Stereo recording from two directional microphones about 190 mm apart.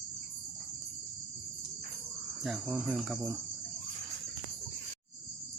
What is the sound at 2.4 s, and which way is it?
Speech, 5° right (ahead or behind).